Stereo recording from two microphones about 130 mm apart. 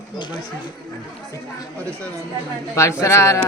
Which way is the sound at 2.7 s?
20° left (ahead or behind).